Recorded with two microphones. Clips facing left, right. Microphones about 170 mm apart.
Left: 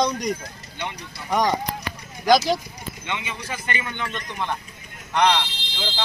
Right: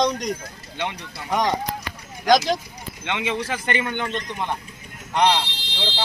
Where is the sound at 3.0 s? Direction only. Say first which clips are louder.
Right 7 dB; 85° right; by 4.0 s 60° right (ahead or behind).